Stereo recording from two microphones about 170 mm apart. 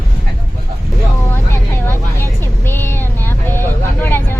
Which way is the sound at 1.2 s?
15° left (ahead or behind).